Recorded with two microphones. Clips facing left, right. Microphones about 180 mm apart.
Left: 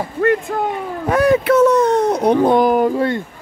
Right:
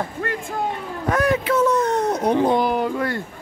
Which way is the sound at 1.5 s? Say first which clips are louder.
Left 7 dB; 75° left (ahead or behind).